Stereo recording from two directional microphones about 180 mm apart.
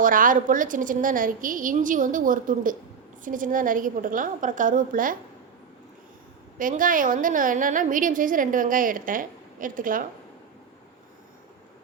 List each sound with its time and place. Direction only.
0.0 s a woman's voice: 50° right (ahead or behind)
6.6 s a woman's voice: 50° right (ahead or behind)